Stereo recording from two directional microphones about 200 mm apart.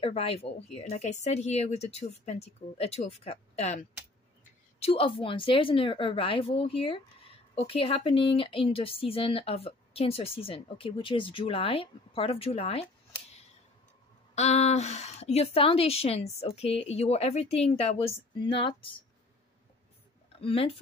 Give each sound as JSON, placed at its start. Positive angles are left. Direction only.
{"t": 0.0, "sound": "a woman's voice", "side_deg": 30}
{"t": 14.3, "sound": "a woman's voice", "side_deg": 35}
{"t": 20.3, "sound": "speech", "side_deg": 30}